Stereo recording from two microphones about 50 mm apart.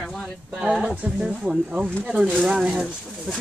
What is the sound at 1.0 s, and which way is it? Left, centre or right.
Speech, centre.